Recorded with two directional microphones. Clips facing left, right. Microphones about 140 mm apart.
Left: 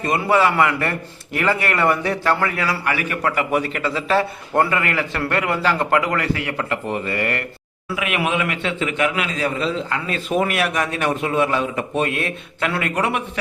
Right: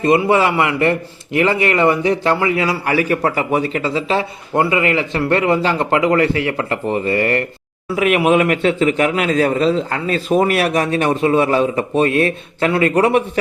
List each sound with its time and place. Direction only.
0.0 s a man's voice: 25° right (ahead or behind)
2.8 s a man's voice: 35° right (ahead or behind); by 4.8 s 15° right (ahead or behind)
4.8 s a man's voice: 25° right (ahead or behind)